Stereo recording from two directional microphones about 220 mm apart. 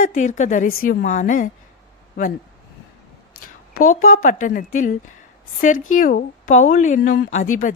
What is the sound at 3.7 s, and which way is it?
Speech, 40° left (ahead or behind).